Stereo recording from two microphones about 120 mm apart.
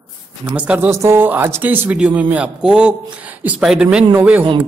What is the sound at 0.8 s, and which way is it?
A man's voice, 20° right (ahead or behind).